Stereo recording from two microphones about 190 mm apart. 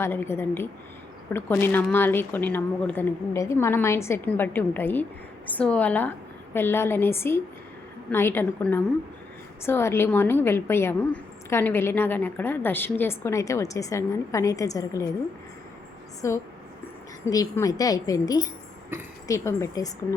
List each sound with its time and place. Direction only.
0.0 s a woman's voice: 15° left (ahead or behind)
16.2 s a woman's voice: 15° left (ahead or behind)